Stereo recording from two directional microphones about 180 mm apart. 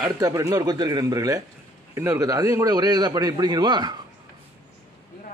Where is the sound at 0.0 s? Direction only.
20° right (ahead or behind).